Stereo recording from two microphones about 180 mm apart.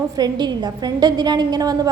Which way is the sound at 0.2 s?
25° right (ahead or behind).